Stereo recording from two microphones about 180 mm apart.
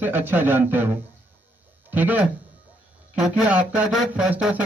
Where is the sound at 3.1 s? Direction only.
5° right (ahead or behind).